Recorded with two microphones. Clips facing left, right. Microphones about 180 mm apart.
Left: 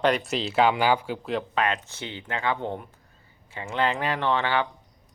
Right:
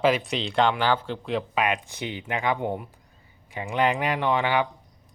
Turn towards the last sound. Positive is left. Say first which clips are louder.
# right 1 dB
turn(degrees=-15)  # may be behind; listen again after turning